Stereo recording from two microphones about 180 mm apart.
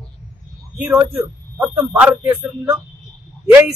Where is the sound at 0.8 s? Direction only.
15° right (ahead or behind).